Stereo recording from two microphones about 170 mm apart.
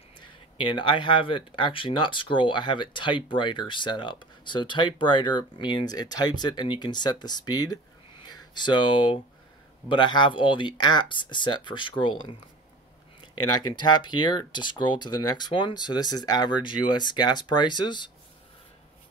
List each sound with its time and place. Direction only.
0.6 s speech: 30° left (ahead or behind)
13.3 s speech: 25° left (ahead or behind)